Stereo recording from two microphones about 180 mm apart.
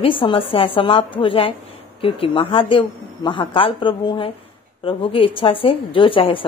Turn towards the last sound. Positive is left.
turn(degrees=30)  # may be behind; listen again after turning